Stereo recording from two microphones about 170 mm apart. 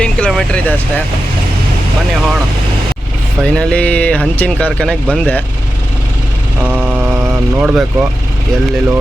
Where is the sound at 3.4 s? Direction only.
5° left (ahead or behind).